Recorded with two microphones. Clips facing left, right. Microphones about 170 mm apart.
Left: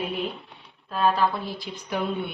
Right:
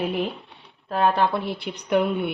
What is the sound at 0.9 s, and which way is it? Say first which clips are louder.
Speech: right 2 dB; 60° right (ahead or behind).